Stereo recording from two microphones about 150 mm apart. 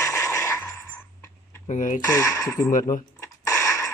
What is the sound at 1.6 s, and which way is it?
Speech, 60° left (ahead or behind).